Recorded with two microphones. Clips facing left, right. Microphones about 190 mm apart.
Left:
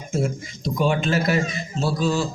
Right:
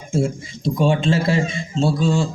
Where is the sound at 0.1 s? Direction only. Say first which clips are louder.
Right 4 dB; 30° right (ahead or behind).